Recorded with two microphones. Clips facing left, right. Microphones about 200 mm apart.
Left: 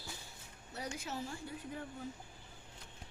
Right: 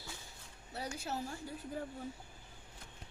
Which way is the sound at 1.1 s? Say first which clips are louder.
Right 1 dB; 40° right (ahead or behind).